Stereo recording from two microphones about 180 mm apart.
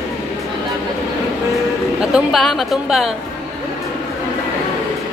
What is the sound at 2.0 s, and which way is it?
A woman's voice, centre (ahead or behind).